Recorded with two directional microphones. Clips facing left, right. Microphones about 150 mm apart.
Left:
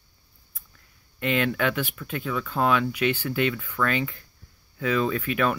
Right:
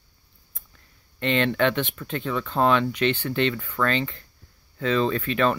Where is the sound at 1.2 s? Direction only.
10° left (ahead or behind).